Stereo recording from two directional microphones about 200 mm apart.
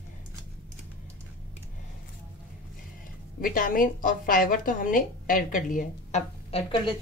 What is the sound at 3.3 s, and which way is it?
A woman's voice, 45° left (ahead or behind).